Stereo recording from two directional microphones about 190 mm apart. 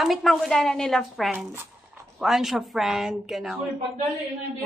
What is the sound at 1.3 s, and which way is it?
A woman's voice, 10° right (ahead or behind).